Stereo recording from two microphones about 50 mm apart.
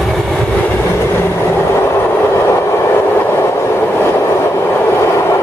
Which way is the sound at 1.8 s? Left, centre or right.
Left.